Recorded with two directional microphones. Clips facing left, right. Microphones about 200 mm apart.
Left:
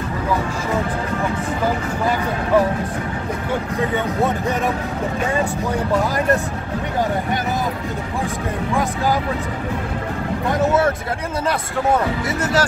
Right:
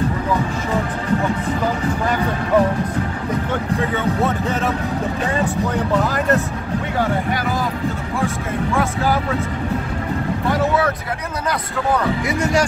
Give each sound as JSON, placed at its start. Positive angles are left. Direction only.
{"t": 10.5, "sound": "vehicle", "side_deg": 25}
{"t": 12.3, "sound": "speech", "side_deg": -15}